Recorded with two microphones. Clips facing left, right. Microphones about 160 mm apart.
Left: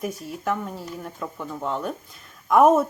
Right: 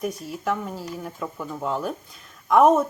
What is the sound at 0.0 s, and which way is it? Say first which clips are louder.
Speech: right 1 dB; centre (ahead or behind).